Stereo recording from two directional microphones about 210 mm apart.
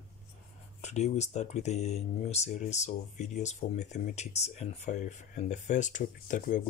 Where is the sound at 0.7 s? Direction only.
35° left (ahead or behind).